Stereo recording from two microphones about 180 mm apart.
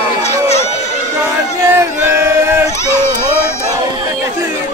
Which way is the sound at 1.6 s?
15° right (ahead or behind).